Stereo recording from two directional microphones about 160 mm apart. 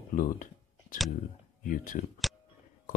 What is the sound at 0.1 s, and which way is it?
Speech, 55° left (ahead or behind).